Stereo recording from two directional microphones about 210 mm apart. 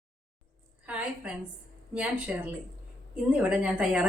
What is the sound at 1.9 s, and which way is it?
Speech, 5° right (ahead or behind).